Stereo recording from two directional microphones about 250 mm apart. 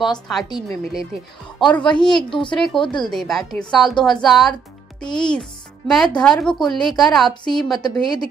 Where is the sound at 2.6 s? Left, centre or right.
Centre.